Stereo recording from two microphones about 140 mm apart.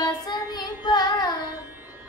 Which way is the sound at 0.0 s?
30° left (ahead or behind).